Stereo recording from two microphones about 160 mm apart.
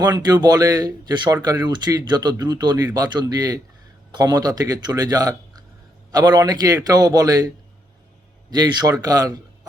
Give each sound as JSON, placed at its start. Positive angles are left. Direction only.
{"t": 0.0, "sound": "speech", "side_deg": -25}